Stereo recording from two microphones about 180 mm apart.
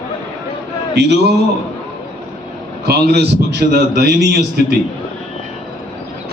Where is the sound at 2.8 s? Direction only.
65° right (ahead or behind).